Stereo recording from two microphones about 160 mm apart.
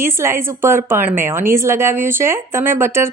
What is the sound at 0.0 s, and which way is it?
A woman's voice, 15° right (ahead or behind).